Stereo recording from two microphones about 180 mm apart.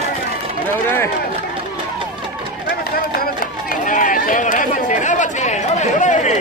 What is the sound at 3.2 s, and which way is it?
Chatter, 55° left (ahead or behind).